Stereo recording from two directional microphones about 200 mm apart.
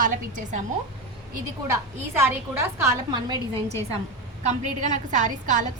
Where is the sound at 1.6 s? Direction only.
10° right (ahead or behind).